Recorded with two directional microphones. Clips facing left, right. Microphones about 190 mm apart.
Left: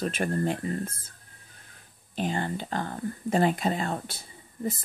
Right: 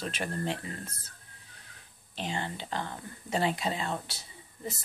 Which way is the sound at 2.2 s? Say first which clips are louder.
Left 6 dB; 50° left (ahead or behind).